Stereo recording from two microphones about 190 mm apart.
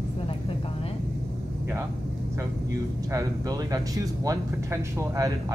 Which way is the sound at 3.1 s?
20° right (ahead or behind).